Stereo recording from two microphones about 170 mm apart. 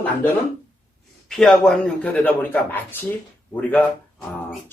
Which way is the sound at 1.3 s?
Centre (ahead or behind).